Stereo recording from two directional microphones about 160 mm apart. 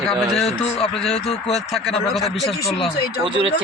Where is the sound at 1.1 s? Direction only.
40° left (ahead or behind).